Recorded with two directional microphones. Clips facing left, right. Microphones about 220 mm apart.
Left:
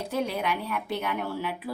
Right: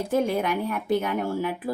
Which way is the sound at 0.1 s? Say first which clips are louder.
Right 5 dB; 50° right (ahead or behind).